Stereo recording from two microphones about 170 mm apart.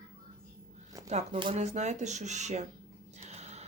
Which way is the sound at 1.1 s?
40° right (ahead or behind).